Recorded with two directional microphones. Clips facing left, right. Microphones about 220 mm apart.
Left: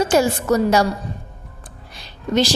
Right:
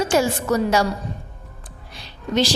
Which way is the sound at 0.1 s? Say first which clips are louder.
Left 3 dB; 40° left (ahead or behind).